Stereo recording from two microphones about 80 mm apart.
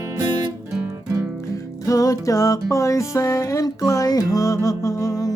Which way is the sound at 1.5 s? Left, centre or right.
Left.